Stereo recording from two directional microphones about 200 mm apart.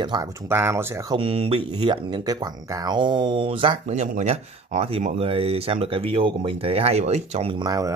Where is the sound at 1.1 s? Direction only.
30° right (ahead or behind).